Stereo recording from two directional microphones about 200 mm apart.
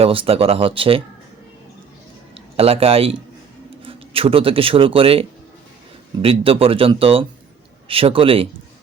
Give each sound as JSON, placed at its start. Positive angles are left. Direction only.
{"t": 0.0, "sound": "speech", "side_deg": -30}
{"t": 2.3, "sound": "speech", "side_deg": -30}
{"t": 6.2, "sound": "speech", "side_deg": -30}